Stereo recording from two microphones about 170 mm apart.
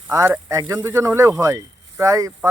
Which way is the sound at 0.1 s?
20° right (ahead or behind).